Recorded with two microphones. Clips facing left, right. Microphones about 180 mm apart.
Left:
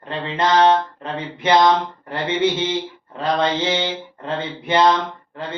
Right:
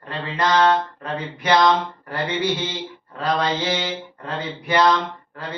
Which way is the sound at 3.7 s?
25° left (ahead or behind).